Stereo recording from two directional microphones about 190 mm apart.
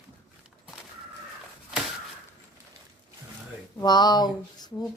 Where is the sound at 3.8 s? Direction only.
20° left (ahead or behind).